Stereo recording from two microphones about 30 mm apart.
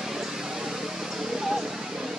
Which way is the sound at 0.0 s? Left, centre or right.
Centre.